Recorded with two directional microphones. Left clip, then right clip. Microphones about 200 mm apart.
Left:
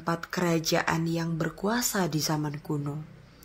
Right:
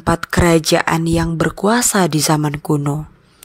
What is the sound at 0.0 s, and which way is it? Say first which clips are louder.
Speech: right 14 dB; 45° right (ahead or behind).